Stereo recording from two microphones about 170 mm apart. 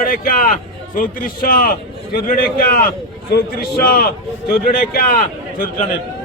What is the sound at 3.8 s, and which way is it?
A man's voice, 65° left (ahead or behind).